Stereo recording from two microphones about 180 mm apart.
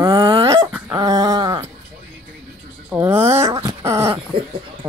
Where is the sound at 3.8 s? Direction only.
15° right (ahead or behind).